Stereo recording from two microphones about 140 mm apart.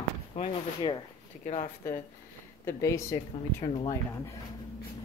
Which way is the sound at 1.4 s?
60° left (ahead or behind).